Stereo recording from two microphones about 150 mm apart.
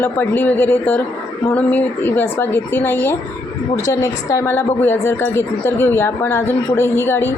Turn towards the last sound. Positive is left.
turn(degrees=15)  # may be behind; listen again after turning